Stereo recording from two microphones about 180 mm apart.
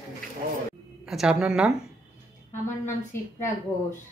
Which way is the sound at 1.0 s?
5° right (ahead or behind).